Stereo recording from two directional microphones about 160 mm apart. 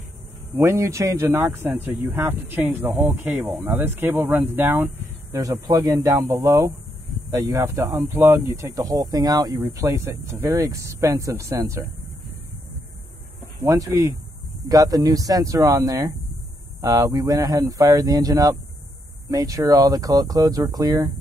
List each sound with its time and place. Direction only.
0.6 s speech: 15° right (ahead or behind)
13.7 s speech: 20° right (ahead or behind)